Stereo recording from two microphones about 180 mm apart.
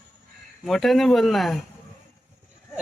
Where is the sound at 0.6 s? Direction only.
Centre (ahead or behind).